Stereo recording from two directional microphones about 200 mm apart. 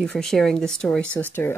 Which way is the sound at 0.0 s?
Centre (ahead or behind).